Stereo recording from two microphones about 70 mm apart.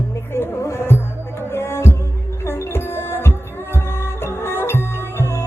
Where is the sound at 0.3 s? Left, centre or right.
Left.